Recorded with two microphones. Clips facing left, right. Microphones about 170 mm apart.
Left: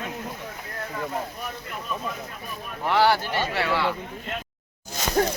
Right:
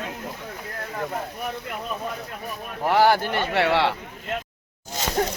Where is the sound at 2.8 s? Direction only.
45° right (ahead or behind); by 3.9 s 70° right (ahead or behind).